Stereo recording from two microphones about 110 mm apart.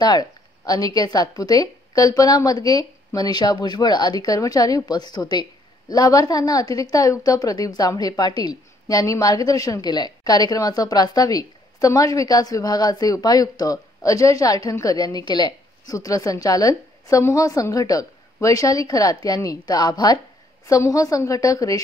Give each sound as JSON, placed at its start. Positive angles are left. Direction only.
{"t": 0.0, "sound": "a woman's voice", "side_deg": 35}